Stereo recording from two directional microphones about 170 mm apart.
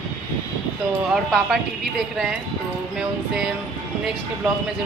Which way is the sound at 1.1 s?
Centre (ahead or behind).